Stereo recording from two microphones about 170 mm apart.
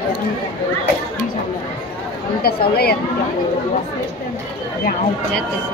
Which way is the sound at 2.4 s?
65° left (ahead or behind).